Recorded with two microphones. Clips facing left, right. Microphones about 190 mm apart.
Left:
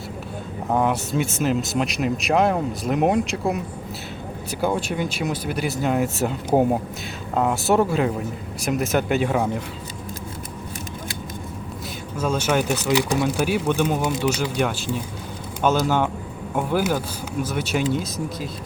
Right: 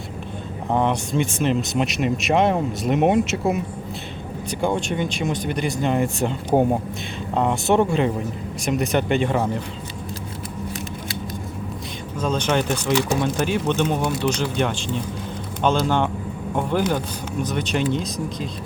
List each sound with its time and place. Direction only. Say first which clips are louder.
0.7 s speech: even; 5° left (ahead or behind)
4.6 s speech: right 1 dB; 5° left (ahead or behind)
12.2 s speech: even; 5° left (ahead or behind)